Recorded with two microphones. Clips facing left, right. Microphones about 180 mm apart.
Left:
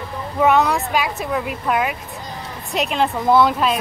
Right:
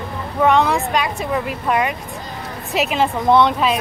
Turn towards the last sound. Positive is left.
turn(degrees=0)  # may be behind; listen again after turning